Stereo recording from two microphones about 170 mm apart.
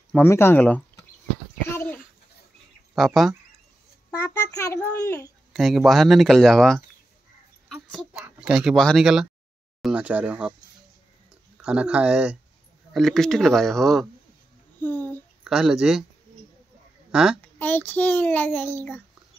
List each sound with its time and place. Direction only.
0.1 s a child's voice: 15° left (ahead or behind)
1.7 s a sound: 10° left (ahead or behind)
2.9 s speech: centre (ahead or behind)
4.6 s a child's voice: 20° left (ahead or behind)
5.5 s speech: centre (ahead or behind)
7.6 s a sound: centre (ahead or behind)
9.8 s speech: 5° right (ahead or behind)
11.6 s speech: 5° right (ahead or behind)
14.8 s a sound: 10° left (ahead or behind)
15.4 s speech: 5° right (ahead or behind)
17.1 s a woman's voice: 5° right (ahead or behind)
17.6 s a child's voice: 10° left (ahead or behind)